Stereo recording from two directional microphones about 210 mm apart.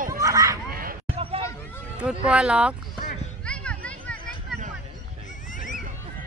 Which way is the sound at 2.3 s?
5° right (ahead or behind).